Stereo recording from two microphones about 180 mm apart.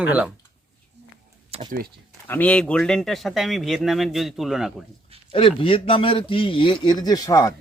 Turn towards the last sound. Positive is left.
turn(degrees=20)  # may be behind; listen again after turning